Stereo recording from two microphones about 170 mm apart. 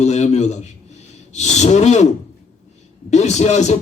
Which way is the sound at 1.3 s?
40° left (ahead or behind).